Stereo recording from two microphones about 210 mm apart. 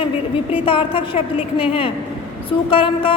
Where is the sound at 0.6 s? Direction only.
25° left (ahead or behind).